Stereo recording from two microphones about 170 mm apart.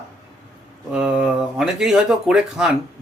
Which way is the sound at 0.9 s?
5° right (ahead or behind).